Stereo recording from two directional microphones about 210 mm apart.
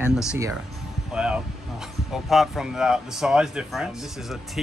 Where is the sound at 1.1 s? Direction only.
5° right (ahead or behind).